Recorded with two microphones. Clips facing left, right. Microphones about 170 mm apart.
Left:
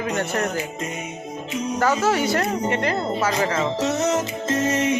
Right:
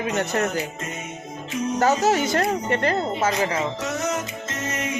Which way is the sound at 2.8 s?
35° right (ahead or behind).